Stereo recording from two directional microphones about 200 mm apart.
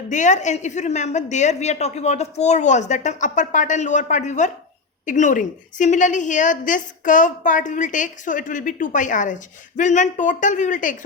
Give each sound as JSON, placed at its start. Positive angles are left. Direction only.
{"t": 0.1, "sound": "a woman's voice", "side_deg": 35}